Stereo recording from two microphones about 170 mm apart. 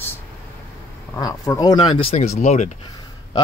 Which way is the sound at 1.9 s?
35° left (ahead or behind).